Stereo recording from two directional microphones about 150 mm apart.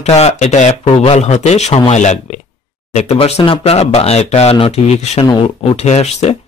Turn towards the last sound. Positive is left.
turn(degrees=45)  # may be behind; listen again after turning